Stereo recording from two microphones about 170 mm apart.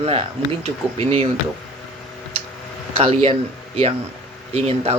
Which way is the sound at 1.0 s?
35° right (ahead or behind).